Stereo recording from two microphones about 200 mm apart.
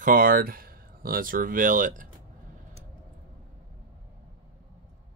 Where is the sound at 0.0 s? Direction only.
45° right (ahead or behind).